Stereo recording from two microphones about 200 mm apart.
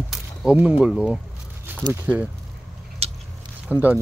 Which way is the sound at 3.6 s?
10° right (ahead or behind).